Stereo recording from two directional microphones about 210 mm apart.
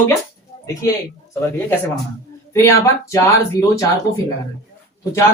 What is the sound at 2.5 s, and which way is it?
Speech, 15° left (ahead or behind).